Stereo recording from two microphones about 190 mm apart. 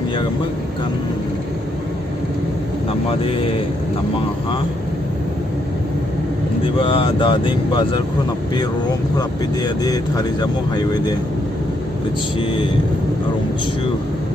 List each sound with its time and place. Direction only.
6.8 s speech: 30° left (ahead or behind)
9.8 s speech: 20° left (ahead or behind)